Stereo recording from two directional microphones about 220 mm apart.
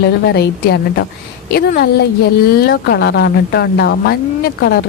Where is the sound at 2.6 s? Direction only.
50° left (ahead or behind).